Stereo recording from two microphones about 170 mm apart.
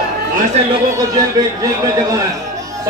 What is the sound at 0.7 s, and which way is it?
A man's voice, 20° right (ahead or behind).